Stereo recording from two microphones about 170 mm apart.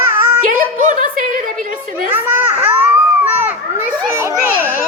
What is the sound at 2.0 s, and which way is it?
Children playing, 10° right (ahead or behind).